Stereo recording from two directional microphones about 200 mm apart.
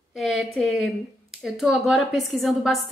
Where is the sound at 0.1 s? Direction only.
Centre (ahead or behind).